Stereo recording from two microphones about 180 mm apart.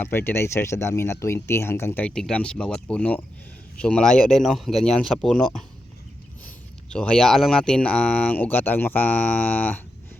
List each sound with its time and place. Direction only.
0.0 s speech: 10° left (ahead or behind)
6.9 s speech: 5° left (ahead or behind)